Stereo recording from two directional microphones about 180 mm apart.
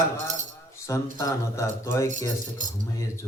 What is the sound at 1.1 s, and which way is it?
Speech, 20° left (ahead or behind).